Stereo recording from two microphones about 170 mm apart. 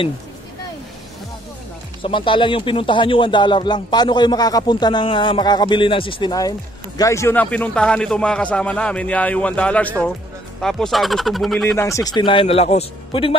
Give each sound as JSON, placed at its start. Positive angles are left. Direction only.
{"t": 2.0, "sound": "a man's voice", "side_deg": 30}
{"t": 11.7, "sound": "a man's voice", "side_deg": 15}